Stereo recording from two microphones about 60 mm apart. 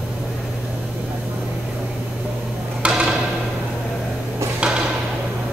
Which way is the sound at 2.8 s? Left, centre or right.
Centre.